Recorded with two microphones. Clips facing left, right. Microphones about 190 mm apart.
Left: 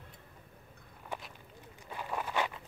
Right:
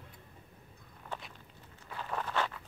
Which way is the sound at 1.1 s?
10° left (ahead or behind).